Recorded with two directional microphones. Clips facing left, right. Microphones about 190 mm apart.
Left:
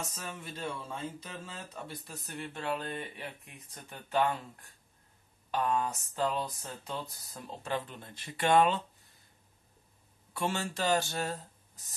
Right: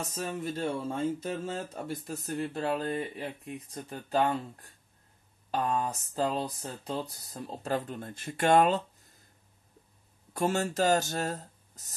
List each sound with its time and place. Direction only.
0.1 s speech: 35° right (ahead or behind)
10.3 s speech: 40° right (ahead or behind)